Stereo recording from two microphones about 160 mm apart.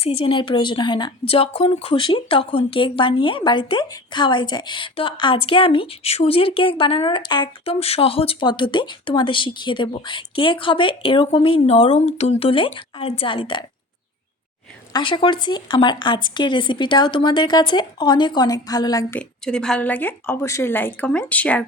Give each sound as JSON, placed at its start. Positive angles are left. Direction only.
{"t": 0.0, "sound": "speech", "side_deg": 35}
{"t": 14.9, "sound": "speech", "side_deg": 30}
{"t": 19.2, "sound": "speech", "side_deg": 5}